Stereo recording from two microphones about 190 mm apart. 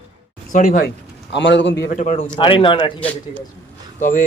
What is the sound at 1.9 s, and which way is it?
Speech, 40° left (ahead or behind).